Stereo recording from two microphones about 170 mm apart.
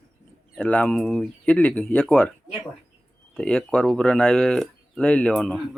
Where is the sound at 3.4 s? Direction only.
5° left (ahead or behind).